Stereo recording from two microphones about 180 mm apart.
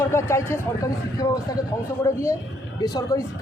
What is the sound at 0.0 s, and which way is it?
A man's voice, 15° left (ahead or behind).